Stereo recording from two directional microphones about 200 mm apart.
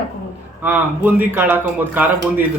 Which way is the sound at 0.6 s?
10° right (ahead or behind).